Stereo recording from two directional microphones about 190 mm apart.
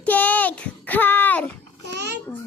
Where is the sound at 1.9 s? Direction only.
60° right (ahead or behind).